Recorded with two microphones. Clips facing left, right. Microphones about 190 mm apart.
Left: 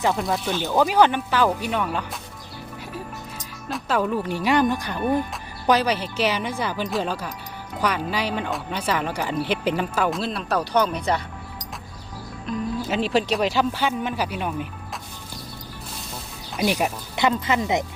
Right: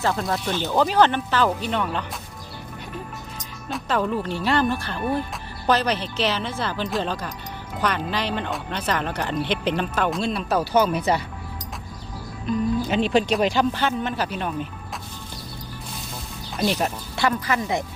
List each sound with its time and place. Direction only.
0.0 s speech: 15° left (ahead or behind)
0.3 s speech: centre (ahead or behind)
3.7 s speech: 5° left (ahead or behind)
12.5 s speech: 5° left (ahead or behind)
16.6 s speech: 10° left (ahead or behind)